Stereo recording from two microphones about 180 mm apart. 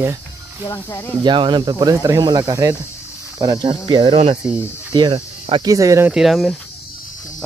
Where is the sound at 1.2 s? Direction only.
25° right (ahead or behind).